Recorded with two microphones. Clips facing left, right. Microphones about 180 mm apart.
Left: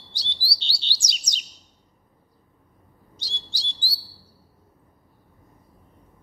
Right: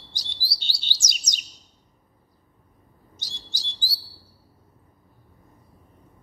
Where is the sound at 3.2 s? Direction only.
30° left (ahead or behind).